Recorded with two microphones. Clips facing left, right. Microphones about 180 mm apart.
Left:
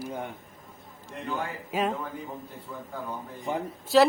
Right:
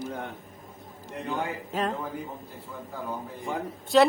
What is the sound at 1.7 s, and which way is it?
Speech, 10° left (ahead or behind).